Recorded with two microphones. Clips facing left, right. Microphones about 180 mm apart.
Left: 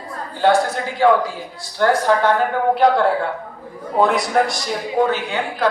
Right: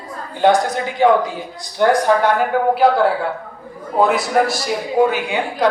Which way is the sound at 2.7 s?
5° right (ahead or behind).